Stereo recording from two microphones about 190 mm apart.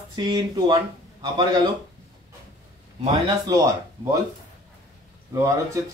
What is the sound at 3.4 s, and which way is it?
Speech, 20° right (ahead or behind).